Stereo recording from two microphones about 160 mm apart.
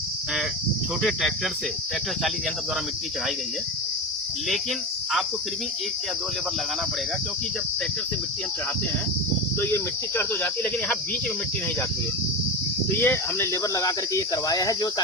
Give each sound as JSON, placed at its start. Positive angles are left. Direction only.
{"t": 9.6, "sound": "speech", "side_deg": 15}
{"t": 13.0, "sound": "speech", "side_deg": 15}